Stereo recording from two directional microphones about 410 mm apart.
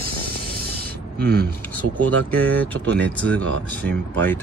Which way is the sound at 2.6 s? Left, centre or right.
Centre.